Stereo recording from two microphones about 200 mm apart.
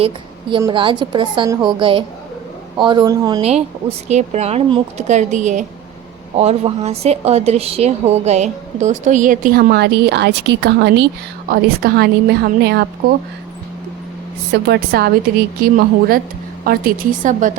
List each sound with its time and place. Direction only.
0.5 s a woman's voice: 25° right (ahead or behind)
3.4 s a woman's voice: 30° right (ahead or behind); by 13.1 s 55° right (ahead or behind)
14.5 s a woman's voice: 55° right (ahead or behind)